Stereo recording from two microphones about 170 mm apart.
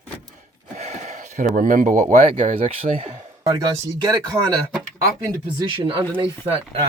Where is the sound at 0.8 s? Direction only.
45° right (ahead or behind).